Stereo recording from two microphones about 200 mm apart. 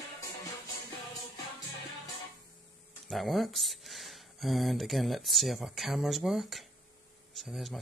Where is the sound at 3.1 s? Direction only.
Centre (ahead or behind).